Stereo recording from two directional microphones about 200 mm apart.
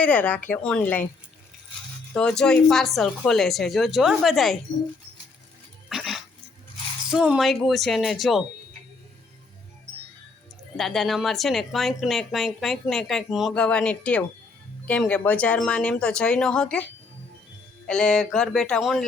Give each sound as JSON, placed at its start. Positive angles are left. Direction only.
{"t": 0.0, "sound": "speech", "side_deg": 5}
{"t": 2.1, "sound": "speech", "side_deg": 5}
{"t": 5.9, "sound": "dog", "side_deg": 0}
{"t": 7.1, "sound": "speech", "side_deg": -5}
{"t": 10.8, "sound": "speech", "side_deg": 0}
{"t": 17.8, "sound": "speech", "side_deg": 5}